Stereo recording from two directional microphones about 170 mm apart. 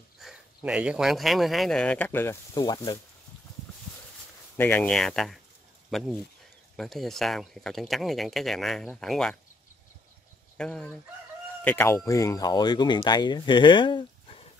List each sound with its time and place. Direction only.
0.2 s speech: 5° right (ahead or behind)
2.5 s speech: 25° left (ahead or behind)
4.6 s speech: 10° left (ahead or behind)
10.6 s speech: 5° left (ahead or behind); by 14.4 s 30° left (ahead or behind)